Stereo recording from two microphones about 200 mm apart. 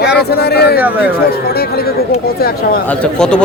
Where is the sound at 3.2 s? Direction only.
5° left (ahead or behind).